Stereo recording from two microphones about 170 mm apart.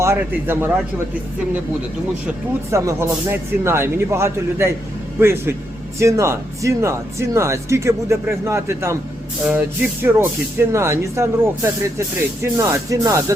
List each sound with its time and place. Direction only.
0.0 s speech: 15° right (ahead or behind)
2.2 s speech: 15° right (ahead or behind)